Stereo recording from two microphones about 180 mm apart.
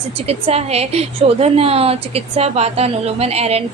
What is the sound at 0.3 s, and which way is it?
A woman's voice, 35° right (ahead or behind).